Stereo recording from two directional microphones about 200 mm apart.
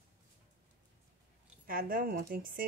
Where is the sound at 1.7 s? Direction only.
45° right (ahead or behind).